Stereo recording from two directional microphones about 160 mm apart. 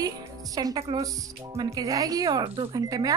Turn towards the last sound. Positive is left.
turn(degrees=-20)  # may be behind; listen again after turning